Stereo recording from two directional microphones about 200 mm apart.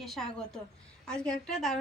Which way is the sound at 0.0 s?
Centre (ahead or behind).